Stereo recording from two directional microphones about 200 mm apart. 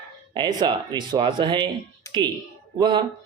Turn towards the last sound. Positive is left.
turn(degrees=-20)  # may be behind; listen again after turning